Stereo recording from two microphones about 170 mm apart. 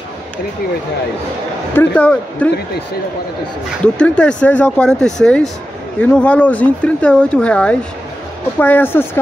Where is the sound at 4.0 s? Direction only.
5° left (ahead or behind).